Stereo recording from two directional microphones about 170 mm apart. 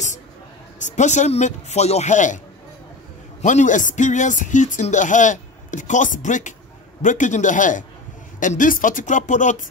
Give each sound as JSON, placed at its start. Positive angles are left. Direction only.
{"t": 0.7, "sound": "speech", "side_deg": 45}
{"t": 3.4, "sound": "speech", "side_deg": 45}